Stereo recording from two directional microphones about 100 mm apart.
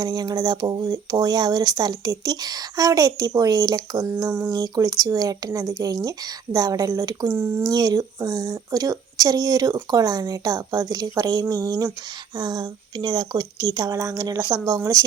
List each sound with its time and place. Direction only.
0.0 s speech: 40° right (ahead or behind)
4.3 s speech: 20° right (ahead or behind)
4.5 s speech: 35° right (ahead or behind)
7.3 s speech: 15° right (ahead or behind)
7.6 s speech: 40° right (ahead or behind)
14.4 s speech: 55° right (ahead or behind)